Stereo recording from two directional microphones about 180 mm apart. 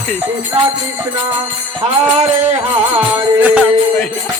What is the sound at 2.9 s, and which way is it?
Music, 10° right (ahead or behind).